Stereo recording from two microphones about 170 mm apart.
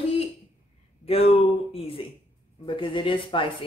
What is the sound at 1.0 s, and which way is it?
Speech, 35° left (ahead or behind).